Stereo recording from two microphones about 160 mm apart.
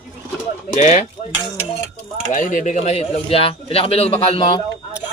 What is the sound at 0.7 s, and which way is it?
Speech, 50° left (ahead or behind).